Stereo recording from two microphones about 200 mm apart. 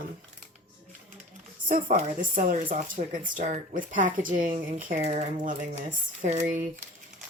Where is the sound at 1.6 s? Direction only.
40° right (ahead or behind).